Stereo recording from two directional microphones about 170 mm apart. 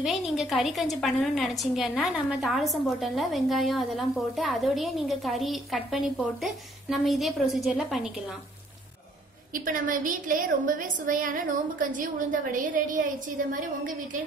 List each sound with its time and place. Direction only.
0.0 s a woman's voice: centre (ahead or behind)
9.5 s a woman's voice: 50° right (ahead or behind)